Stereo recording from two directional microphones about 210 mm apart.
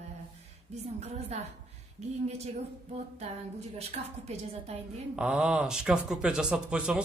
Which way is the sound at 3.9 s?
30° right (ahead or behind).